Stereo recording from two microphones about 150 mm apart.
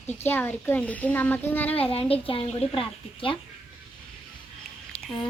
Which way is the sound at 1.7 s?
40° left (ahead or behind).